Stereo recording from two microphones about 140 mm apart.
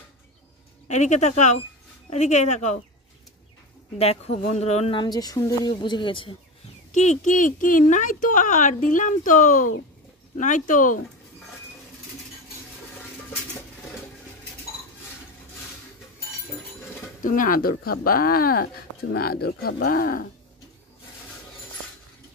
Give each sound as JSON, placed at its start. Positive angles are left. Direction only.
{"t": 0.8, "sound": "speech", "side_deg": 55}
{"t": 4.0, "sound": "speech", "side_deg": 45}
{"t": 4.9, "sound": "speech", "side_deg": 30}
{"t": 6.9, "sound": "speech", "side_deg": 60}
{"t": 17.2, "sound": "speech", "side_deg": 75}